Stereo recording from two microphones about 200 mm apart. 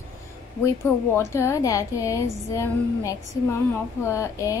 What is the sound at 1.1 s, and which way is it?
A woman's voice, 15° left (ahead or behind).